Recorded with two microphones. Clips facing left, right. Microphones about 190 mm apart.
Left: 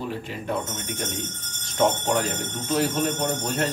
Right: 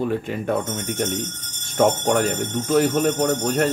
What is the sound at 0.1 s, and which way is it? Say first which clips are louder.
Speech: right 6 dB; 55° right (ahead or behind).